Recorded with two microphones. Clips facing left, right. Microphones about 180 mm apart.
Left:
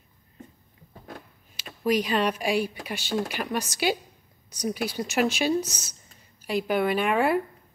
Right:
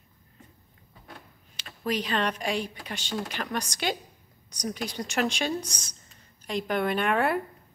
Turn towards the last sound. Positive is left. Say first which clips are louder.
# left 2 dB
turn(degrees=0)  # may be behind; listen again after turning